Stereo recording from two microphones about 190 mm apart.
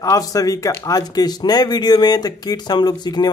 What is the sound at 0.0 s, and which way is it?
Speech, 20° left (ahead or behind).